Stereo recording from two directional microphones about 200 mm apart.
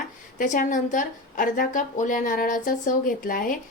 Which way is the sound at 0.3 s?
40° left (ahead or behind).